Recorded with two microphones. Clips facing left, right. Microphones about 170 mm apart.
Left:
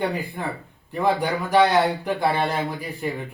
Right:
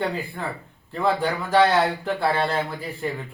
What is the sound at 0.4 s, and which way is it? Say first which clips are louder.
Speech: left 1 dB; 15° left (ahead or behind).